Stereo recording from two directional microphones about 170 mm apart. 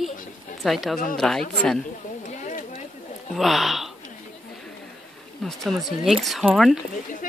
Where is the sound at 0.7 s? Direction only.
Centre (ahead or behind).